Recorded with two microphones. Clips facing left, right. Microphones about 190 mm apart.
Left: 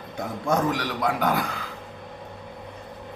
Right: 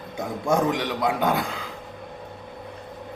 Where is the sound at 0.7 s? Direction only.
20° right (ahead or behind).